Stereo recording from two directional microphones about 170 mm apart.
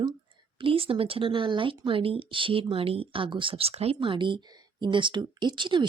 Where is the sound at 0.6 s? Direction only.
30° right (ahead or behind).